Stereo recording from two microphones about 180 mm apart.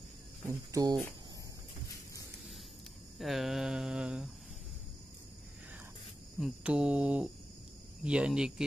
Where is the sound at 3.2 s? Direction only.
Centre (ahead or behind).